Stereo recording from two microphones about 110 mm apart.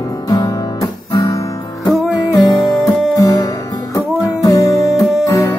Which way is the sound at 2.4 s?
40° left (ahead or behind).